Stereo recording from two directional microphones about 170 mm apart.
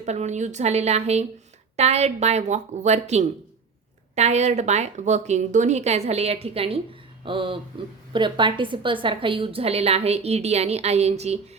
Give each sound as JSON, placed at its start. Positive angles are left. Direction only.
{"t": 0.0, "sound": "a woman's voice", "side_deg": -40}